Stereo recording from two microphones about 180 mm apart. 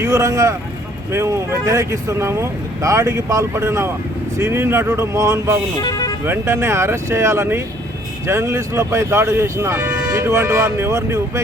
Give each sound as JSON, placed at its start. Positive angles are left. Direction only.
{"t": 0.0, "sound": "speech", "side_deg": -15}
{"t": 5.8, "sound": "speech", "side_deg": 20}
{"t": 6.2, "sound": "speech", "side_deg": -15}